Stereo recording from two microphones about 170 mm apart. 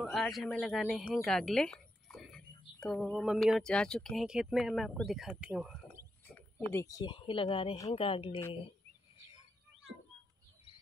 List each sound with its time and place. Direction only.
0.0 s a woman's voice: centre (ahead or behind)
6.2 s speech: 10° left (ahead or behind); by 8.4 s 30° left (ahead or behind)